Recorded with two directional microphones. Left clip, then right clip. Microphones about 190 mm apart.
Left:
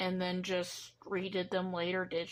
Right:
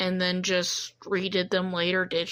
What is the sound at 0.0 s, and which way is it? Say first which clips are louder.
Speech: right 9 dB; 10° right (ahead or behind).